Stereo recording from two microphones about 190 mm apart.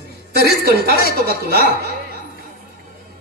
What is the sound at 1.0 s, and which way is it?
Speech, 55° right (ahead or behind).